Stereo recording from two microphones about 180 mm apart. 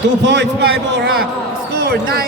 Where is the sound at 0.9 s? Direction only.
65° right (ahead or behind).